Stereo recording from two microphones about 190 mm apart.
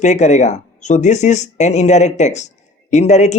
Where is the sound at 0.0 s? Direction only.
40° left (ahead or behind).